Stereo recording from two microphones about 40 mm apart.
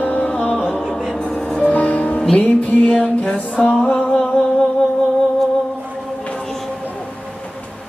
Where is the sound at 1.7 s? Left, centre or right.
Left.